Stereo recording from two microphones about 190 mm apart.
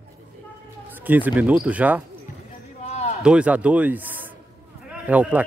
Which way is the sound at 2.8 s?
35° left (ahead or behind).